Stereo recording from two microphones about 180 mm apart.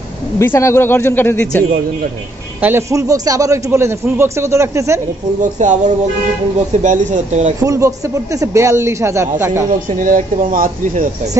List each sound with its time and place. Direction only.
0.4 s speech: 15° left (ahead or behind)
2.6 s a man's voice: 15° right (ahead or behind)
5.4 s speech: 40° right (ahead or behind)
7.6 s a man's voice: 20° right (ahead or behind)
9.7 s speech: 45° right (ahead or behind)